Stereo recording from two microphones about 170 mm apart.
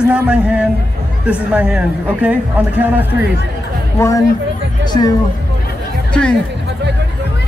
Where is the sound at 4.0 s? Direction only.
15° left (ahead or behind).